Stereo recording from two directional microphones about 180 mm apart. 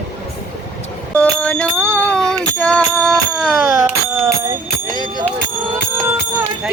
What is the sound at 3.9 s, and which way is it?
Speech, 10° right (ahead or behind).